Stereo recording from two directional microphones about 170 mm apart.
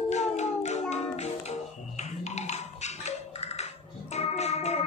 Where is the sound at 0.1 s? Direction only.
40° left (ahead or behind).